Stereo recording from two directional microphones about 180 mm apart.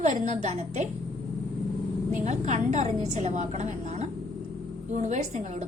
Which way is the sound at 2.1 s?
40° right (ahead or behind).